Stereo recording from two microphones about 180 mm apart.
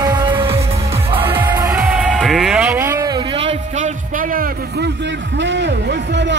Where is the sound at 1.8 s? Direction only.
5° right (ahead or behind).